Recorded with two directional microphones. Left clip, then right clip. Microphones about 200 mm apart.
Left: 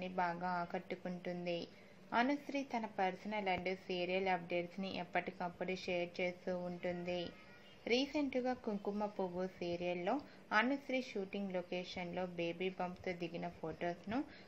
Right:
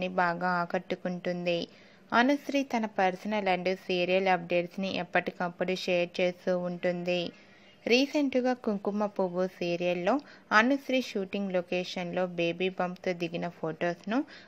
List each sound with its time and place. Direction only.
0.0 s a woman's voice: 45° right (ahead or behind)